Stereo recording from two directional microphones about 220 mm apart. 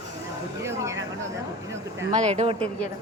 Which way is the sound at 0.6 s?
15° right (ahead or behind).